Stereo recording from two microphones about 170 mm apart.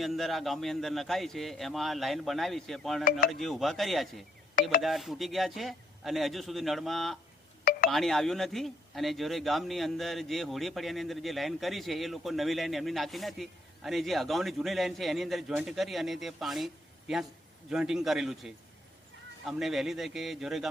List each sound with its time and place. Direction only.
0.0 s speech: centre (ahead or behind)
3.0 s speech: 60° left (ahead or behind)
3.2 s speech: centre (ahead or behind)
7.6 s a sound: 60° left (ahead or behind)
7.9 s speech: centre (ahead or behind)